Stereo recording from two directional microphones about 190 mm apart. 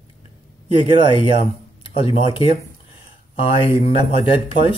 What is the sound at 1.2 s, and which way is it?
Speech, 30° left (ahead or behind).